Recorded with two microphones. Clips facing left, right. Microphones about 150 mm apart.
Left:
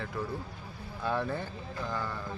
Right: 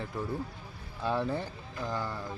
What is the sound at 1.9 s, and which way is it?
Speech, 10° right (ahead or behind).